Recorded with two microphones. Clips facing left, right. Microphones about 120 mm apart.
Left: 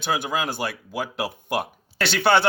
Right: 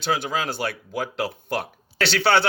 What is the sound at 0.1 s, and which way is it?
A man's voice, 15° left (ahead or behind).